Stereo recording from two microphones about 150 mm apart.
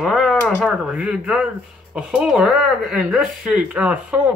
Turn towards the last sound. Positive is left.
turn(degrees=-10)  # may be behind; listen again after turning